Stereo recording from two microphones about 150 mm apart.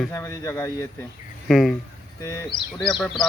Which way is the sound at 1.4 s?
Centre (ahead or behind).